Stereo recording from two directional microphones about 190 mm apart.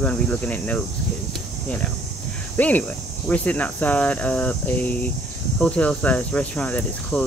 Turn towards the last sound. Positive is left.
turn(degrees=5)  # may be behind; listen again after turning